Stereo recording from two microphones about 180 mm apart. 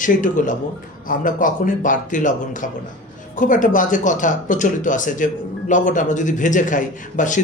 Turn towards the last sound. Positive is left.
turn(degrees=45)  # may be behind; listen again after turning